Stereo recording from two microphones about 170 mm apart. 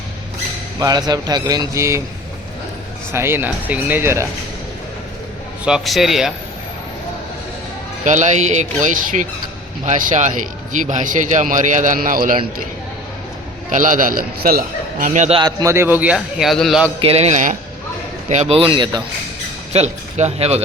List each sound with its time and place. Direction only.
0.8 s a man's voice: 25° right (ahead or behind)
3.1 s a man's voice: 15° right (ahead or behind)
5.6 s a man's voice: centre (ahead or behind)
8.0 s speech: 45° right (ahead or behind)
13.7 s speech: 50° right (ahead or behind)
15.4 s a man's voice: 20° right (ahead or behind); by 16.9 s centre (ahead or behind)
17.0 s speech: 35° right (ahead or behind)